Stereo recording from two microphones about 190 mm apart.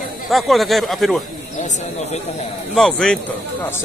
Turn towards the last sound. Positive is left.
turn(degrees=5)  # may be behind; listen again after turning